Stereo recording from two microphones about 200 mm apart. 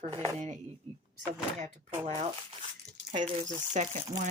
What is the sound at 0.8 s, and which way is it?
Speech, 30° right (ahead or behind).